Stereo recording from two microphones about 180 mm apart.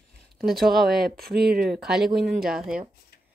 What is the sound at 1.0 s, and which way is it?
Speech, 60° right (ahead or behind).